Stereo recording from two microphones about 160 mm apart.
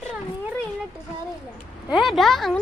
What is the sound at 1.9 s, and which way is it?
Speech, centre (ahead or behind).